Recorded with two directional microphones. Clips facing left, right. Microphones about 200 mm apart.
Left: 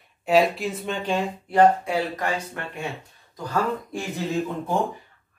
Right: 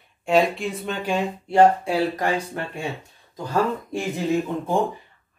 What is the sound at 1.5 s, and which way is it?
Speech, 30° right (ahead or behind).